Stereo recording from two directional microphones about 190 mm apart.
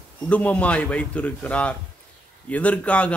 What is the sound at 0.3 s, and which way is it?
A man's voice, 5° left (ahead or behind).